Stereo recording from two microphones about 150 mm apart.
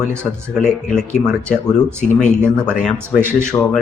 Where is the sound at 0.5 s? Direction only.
5° left (ahead or behind).